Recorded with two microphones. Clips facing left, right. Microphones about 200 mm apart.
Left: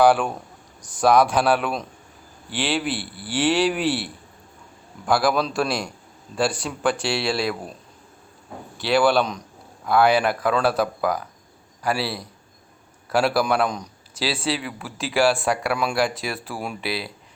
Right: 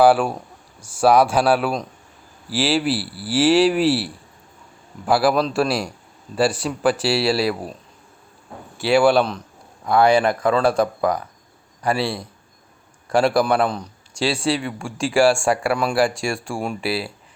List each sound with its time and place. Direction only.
0.0 s a man's voice: 5° right (ahead or behind)
2.9 s speech: 35° right (ahead or behind)
3.2 s speech: 5° right (ahead or behind)
3.8 s speech: 30° right (ahead or behind)
5.0 s speech: 5° right (ahead or behind)
8.8 s speech: centre (ahead or behind)